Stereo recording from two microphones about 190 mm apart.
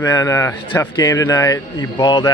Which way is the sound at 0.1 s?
15° left (ahead or behind).